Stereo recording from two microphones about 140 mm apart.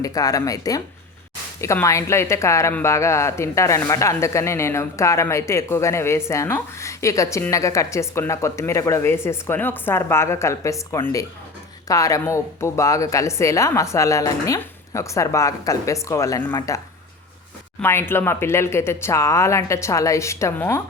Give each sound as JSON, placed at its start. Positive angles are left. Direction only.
{"t": 0.0, "sound": "speech", "side_deg": 25}
{"t": 17.8, "sound": "speech", "side_deg": 15}